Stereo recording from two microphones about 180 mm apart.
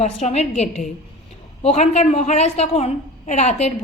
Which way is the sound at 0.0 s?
40° left (ahead or behind).